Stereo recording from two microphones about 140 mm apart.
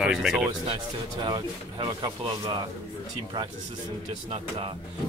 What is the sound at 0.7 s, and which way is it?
Speech, 35° right (ahead or behind).